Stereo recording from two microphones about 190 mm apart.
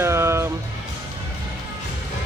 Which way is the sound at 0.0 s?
15° right (ahead or behind).